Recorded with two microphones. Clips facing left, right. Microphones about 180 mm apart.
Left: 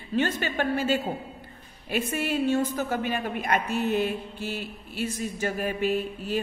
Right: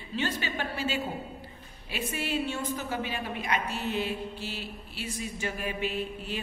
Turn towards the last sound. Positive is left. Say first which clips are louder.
# left 6 dB
turn(degrees=45)  # may be behind; listen again after turning